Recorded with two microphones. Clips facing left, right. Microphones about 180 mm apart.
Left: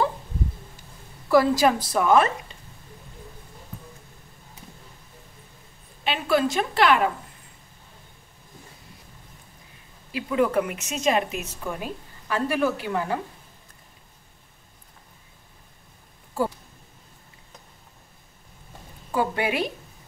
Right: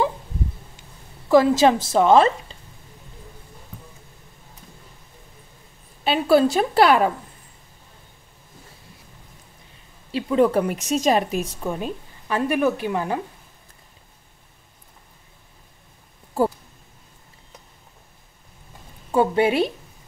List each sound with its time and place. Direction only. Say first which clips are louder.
1.3 s a woman's voice: right 4 dB; 20° right (ahead or behind)
6.0 s a woman's voice: right 6 dB; 35° right (ahead or behind)
10.1 s a woman's voice: right 4 dB; 30° right (ahead or behind)
19.1 s a woman's voice: right 6 dB; 30° right (ahead or behind)